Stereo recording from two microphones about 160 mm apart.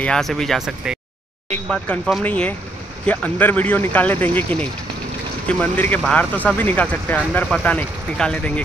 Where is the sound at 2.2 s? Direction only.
10° left (ahead or behind).